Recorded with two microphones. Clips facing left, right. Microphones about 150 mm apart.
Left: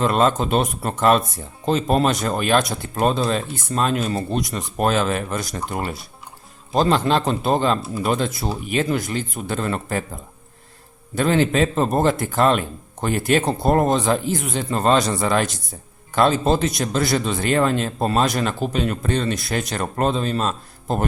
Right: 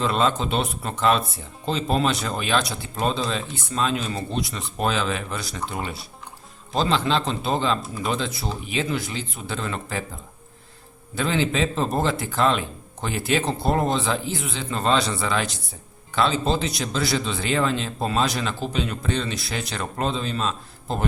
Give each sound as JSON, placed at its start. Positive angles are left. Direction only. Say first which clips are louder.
{"t": 0.0, "sound": "a man's voice", "louder": "left 4 dB", "side_deg": 50}
{"t": 11.1, "sound": "a man's voice", "louder": "left 5 dB", "side_deg": 50}